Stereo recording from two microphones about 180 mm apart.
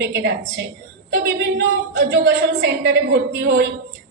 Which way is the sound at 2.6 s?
75° right (ahead or behind).